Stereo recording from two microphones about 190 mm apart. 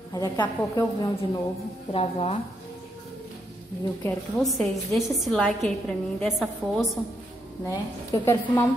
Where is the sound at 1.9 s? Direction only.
30° left (ahead or behind).